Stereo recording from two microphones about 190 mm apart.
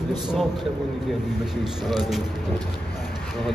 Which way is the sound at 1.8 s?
Centre (ahead or behind).